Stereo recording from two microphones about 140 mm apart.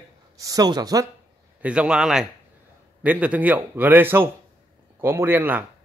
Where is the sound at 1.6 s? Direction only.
5° right (ahead or behind).